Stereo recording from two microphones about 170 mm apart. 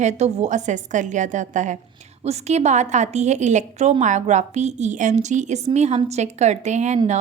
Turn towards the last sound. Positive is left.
turn(degrees=-45)  # may be behind; listen again after turning